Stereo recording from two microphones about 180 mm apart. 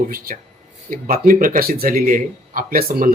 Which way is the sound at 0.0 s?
50° right (ahead or behind).